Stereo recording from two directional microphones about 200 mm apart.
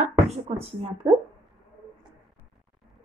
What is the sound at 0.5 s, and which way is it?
Speech, 30° right (ahead or behind).